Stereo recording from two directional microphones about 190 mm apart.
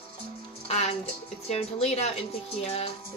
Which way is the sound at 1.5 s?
35° left (ahead or behind).